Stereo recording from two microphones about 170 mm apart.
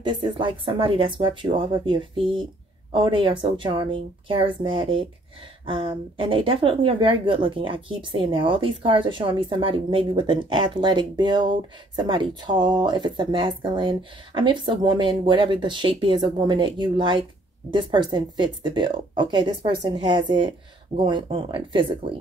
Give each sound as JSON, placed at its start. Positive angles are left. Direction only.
{"t": 0.0, "sound": "a woman's voice", "side_deg": -30}